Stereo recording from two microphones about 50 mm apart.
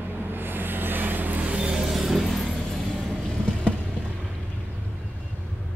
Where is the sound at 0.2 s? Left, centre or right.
Right.